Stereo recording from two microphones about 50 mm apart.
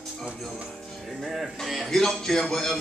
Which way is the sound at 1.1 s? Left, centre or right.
Centre.